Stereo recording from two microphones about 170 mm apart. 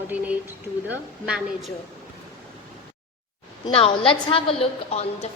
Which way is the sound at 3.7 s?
30° left (ahead or behind).